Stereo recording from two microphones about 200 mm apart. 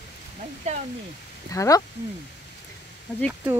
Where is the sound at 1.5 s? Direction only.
15° left (ahead or behind).